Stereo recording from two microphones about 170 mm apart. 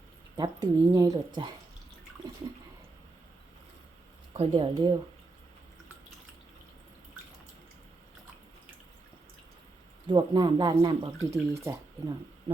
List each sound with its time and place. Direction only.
0.3 s speech: 25° right (ahead or behind)
4.4 s speech: 30° right (ahead or behind)
10.1 s speech: 25° right (ahead or behind)